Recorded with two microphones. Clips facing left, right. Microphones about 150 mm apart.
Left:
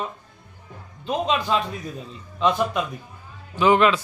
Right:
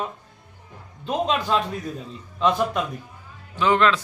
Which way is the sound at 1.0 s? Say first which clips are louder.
Even; centre (ahead or behind).